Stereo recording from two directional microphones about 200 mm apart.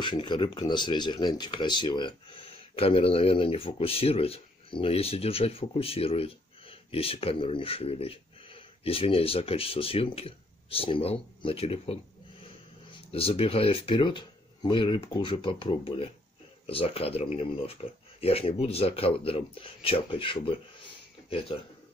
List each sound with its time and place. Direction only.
0.0 s speech: 25° left (ahead or behind)
13.1 s speech: 30° left (ahead or behind)